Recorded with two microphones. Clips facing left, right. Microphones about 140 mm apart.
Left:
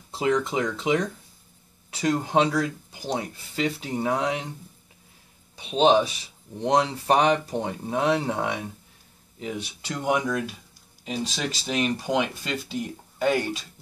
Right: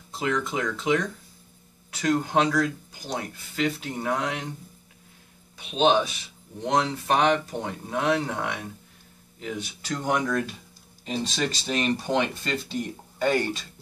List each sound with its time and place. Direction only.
0.2 s speech: 30° left (ahead or behind)
5.6 s speech: 30° left (ahead or behind)
10.0 s speech: 10° left (ahead or behind)